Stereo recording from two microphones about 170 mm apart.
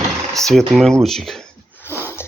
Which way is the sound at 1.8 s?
15° left (ahead or behind).